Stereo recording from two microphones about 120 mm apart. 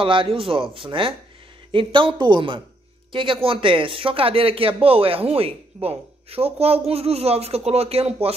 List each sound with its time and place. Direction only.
0.0 s speech: 45° right (ahead or behind)